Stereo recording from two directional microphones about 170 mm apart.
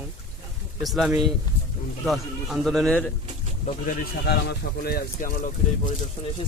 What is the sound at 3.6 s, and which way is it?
Speech, 50° left (ahead or behind).